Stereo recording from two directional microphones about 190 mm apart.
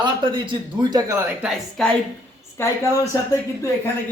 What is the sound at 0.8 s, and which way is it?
Speech, 20° right (ahead or behind).